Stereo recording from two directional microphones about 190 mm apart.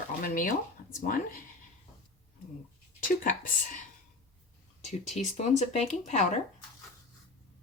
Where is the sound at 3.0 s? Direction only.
45° left (ahead or behind).